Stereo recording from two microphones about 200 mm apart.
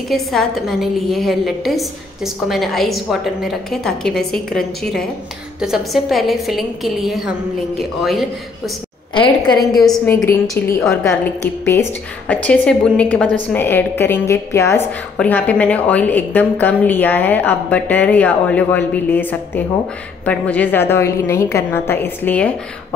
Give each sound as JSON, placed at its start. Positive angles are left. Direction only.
{"t": 0.1, "sound": "a woman's voice", "side_deg": 0}
{"t": 9.1, "sound": "a woman's voice", "side_deg": 20}
{"t": 9.8, "sound": "a woman's voice", "side_deg": 0}
{"t": 11.6, "sound": "a woman's voice", "side_deg": 10}